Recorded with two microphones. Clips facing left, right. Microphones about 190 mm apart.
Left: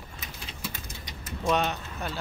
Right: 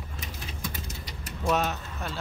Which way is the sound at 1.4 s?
5° right (ahead or behind).